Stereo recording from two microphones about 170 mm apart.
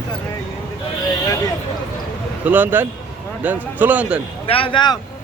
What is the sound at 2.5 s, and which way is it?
Speech, 10° right (ahead or behind).